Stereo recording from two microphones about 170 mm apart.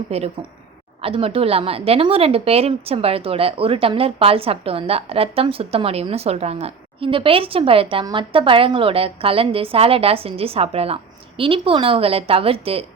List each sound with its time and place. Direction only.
0.1 s a woman's voice: 35° right (ahead or behind)